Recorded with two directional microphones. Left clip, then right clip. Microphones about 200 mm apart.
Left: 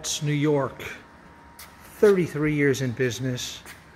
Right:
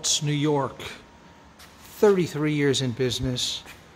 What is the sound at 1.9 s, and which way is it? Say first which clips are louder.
Speech: left 1 dB; centre (ahead or behind).